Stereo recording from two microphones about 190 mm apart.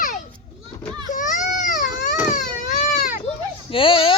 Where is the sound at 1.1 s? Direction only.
45° left (ahead or behind).